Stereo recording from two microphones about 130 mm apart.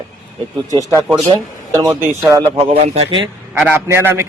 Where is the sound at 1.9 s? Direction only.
20° right (ahead or behind).